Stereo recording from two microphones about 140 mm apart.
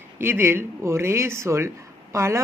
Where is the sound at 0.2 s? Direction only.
15° right (ahead or behind).